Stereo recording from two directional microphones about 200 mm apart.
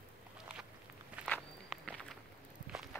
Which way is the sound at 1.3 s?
5° left (ahead or behind).